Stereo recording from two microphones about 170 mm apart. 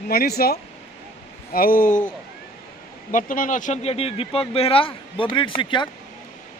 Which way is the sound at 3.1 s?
50° left (ahead or behind).